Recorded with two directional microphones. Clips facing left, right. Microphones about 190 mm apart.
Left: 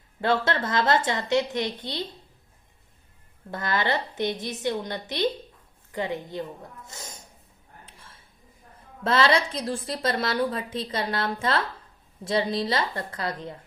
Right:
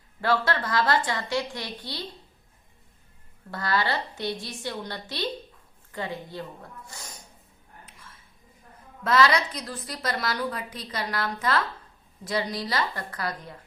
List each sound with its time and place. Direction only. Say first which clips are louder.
0.2 s a woman's voice: left 1 dB; 25° left (ahead or behind)
3.5 s a woman's voice: left 1 dB; 20° left (ahead or behind)
7.9 s a sound: even; 30° left (ahead or behind)
9.0 s a woman's voice: even; 30° left (ahead or behind)